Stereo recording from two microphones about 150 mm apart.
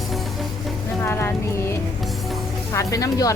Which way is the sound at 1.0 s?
15° left (ahead or behind).